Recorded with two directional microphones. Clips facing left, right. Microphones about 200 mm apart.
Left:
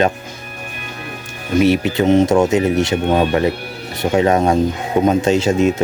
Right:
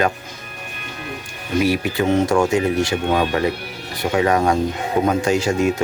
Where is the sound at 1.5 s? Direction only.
25° left (ahead or behind).